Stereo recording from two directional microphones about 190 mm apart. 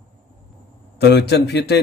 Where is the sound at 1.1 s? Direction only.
60° left (ahead or behind).